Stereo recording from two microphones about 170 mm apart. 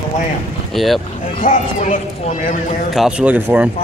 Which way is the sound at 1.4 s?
45° left (ahead or behind).